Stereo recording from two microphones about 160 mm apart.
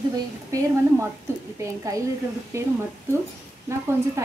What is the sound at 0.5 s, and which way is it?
Speech, 20° right (ahead or behind).